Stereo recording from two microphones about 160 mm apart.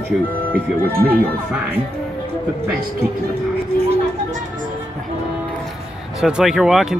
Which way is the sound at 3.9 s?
50° right (ahead or behind).